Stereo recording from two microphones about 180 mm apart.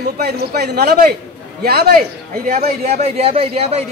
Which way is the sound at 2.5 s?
35° right (ahead or behind).